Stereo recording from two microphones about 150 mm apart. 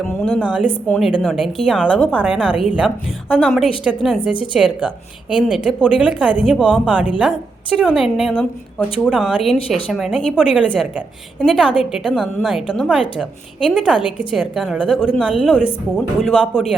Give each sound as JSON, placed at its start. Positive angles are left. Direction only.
{"t": 0.0, "sound": "a woman's voice", "side_deg": 5}
{"t": 0.3, "sound": "a woman's voice", "side_deg": -10}
{"t": 4.2, "sound": "a woman's voice", "side_deg": 35}
{"t": 4.5, "sound": "a woman's voice", "side_deg": -5}